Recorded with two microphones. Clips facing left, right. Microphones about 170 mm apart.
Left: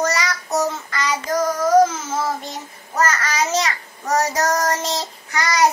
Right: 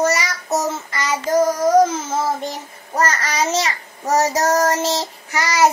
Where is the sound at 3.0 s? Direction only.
30° right (ahead or behind).